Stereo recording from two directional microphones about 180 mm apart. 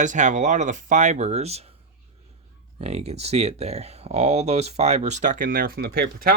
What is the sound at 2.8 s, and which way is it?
Speech, 35° right (ahead or behind).